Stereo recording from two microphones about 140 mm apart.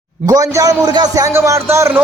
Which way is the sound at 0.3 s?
25° right (ahead or behind).